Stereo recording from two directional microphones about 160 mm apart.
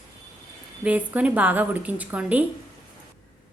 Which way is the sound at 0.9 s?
10° right (ahead or behind).